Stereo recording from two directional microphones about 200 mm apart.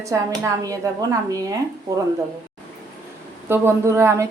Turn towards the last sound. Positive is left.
turn(degrees=-15)  # may be behind; listen again after turning